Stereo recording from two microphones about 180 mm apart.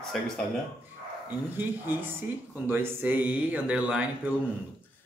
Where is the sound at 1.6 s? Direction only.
10° right (ahead or behind).